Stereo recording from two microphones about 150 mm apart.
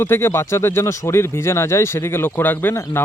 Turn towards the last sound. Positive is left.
turn(degrees=15)  # may be behind; listen again after turning